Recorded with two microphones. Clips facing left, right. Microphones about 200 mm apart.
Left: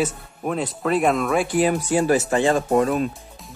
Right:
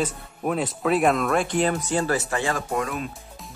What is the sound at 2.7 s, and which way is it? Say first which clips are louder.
Speech: left 8 dB; 35° left (ahead or behind).